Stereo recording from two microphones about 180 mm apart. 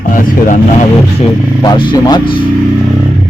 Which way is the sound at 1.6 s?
25° left (ahead or behind).